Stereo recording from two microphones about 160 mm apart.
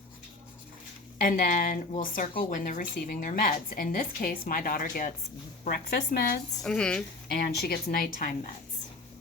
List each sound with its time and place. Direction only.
1.2 s speech: 60° left (ahead or behind)
5.6 s a woman's voice: 70° left (ahead or behind)
6.6 s speech: 5° left (ahead or behind)
7.3 s speech: 75° left (ahead or behind)